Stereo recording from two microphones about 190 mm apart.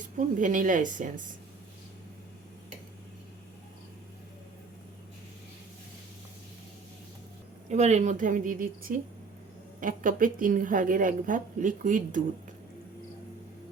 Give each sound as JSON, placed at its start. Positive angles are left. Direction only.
{"t": 0.2, "sound": "a woman's voice", "side_deg": -45}
{"t": 7.7, "sound": "a woman's voice", "side_deg": -35}